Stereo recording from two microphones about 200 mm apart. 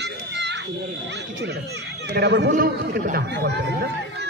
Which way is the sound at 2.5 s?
45° right (ahead or behind).